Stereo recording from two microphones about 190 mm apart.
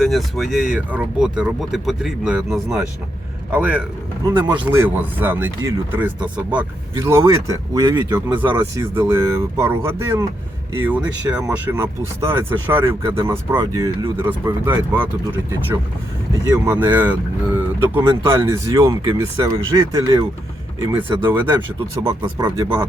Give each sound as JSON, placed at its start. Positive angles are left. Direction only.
{"t": 0.0, "sound": "speech", "side_deg": 0}
{"t": 16.6, "sound": "speech", "side_deg": -10}